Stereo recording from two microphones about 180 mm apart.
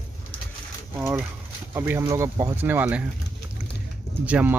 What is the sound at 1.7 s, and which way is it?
Speech, 15° right (ahead or behind).